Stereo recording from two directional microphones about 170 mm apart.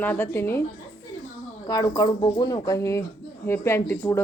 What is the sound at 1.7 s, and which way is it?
Speech, 20° left (ahead or behind).